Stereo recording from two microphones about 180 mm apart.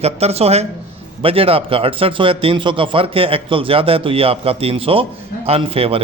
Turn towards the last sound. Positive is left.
turn(degrees=-30)  # may be behind; listen again after turning